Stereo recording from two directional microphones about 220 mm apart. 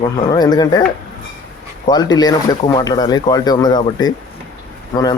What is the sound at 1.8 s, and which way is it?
Speech, 20° left (ahead or behind).